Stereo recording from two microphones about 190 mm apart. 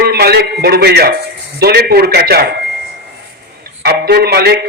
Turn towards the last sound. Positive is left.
turn(degrees=-55)  # may be behind; listen again after turning